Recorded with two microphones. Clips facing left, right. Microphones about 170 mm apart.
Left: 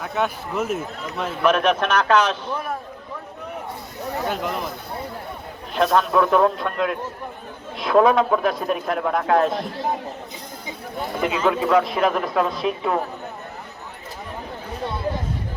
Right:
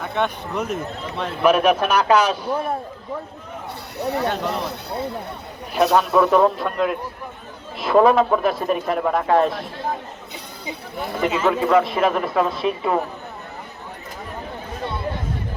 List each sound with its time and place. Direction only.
0.0 s speech: 5° left (ahead or behind)
1.4 s a man's voice: 10° right (ahead or behind)
3.9 s speech: 75° right (ahead or behind)
5.7 s speech: 5° right (ahead or behind)
11.0 s speech: centre (ahead or behind)